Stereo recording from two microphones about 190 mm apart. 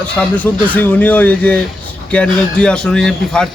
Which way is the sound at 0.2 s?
10° left (ahead or behind).